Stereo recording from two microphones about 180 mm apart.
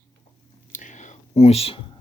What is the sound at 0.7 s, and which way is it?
Whispering, 45° left (ahead or behind).